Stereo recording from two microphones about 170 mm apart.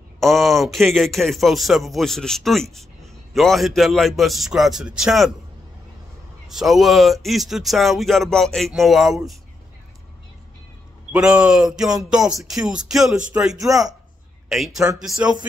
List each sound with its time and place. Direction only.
0.2 s a man's voice: centre (ahead or behind)
6.5 s a man's voice: centre (ahead or behind)
11.1 s a man's voice: 5° right (ahead or behind)